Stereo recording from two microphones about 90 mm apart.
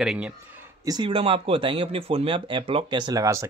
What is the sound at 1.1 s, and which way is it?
Speech, 90° right.